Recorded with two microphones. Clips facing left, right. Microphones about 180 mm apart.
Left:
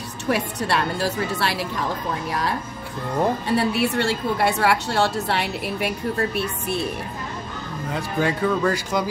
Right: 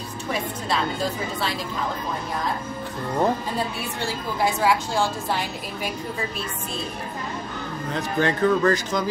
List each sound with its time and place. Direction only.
0.3 s a woman's voice: 70° left (ahead or behind)
3.4 s a woman's voice: 75° left (ahead or behind)
7.9 s speech: 10° left (ahead or behind)